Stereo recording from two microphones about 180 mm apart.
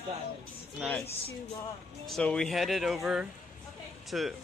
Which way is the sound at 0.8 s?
Centre (ahead or behind).